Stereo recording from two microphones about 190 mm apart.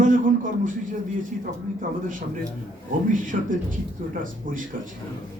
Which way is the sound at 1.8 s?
45° right (ahead or behind).